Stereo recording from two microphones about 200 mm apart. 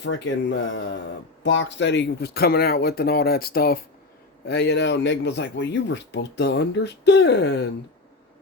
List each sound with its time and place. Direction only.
0.0 s speech: 65° left (ahead or behind)